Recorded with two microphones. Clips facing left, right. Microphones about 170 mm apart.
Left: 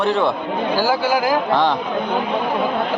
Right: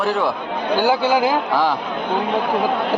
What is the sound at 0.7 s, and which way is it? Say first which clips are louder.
Speech: right 3 dB; 20° right (ahead or behind).